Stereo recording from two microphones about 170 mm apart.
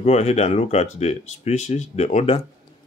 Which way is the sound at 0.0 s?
40° left (ahead or behind).